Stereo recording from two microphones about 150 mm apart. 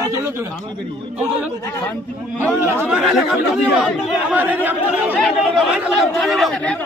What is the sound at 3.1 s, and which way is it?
Speech, centre (ahead or behind).